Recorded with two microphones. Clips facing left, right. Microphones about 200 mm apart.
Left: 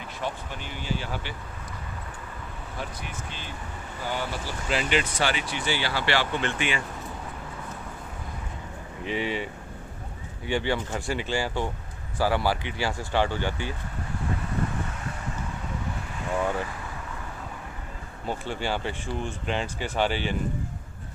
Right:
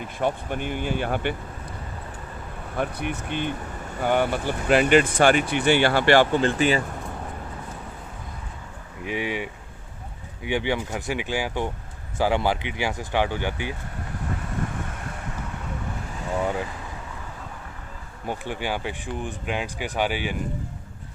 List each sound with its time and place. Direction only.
0.2 s speech: 55° right (ahead or behind)
2.7 s speech: 60° right (ahead or behind)
6.4 s speech: 35° right (ahead or behind)
9.0 s speech: 10° right (ahead or behind)
18.3 s speech: 15° right (ahead or behind)